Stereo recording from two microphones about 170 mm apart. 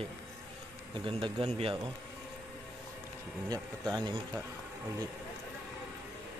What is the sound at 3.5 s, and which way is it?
Speech, 25° right (ahead or behind).